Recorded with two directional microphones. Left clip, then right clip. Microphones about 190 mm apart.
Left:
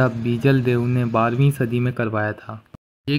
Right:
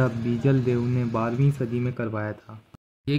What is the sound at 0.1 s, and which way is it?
Speech, centre (ahead or behind).